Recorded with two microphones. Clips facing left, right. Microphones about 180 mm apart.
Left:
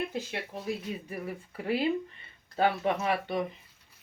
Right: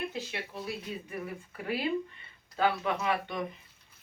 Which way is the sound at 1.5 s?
30° left (ahead or behind).